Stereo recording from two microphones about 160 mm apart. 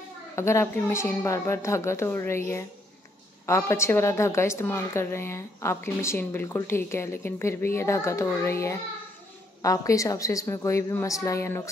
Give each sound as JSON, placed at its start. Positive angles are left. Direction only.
{"t": 0.4, "sound": "a woman's voice", "side_deg": 15}